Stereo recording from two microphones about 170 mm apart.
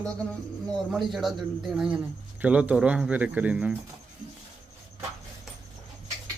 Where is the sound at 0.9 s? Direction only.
Centre (ahead or behind).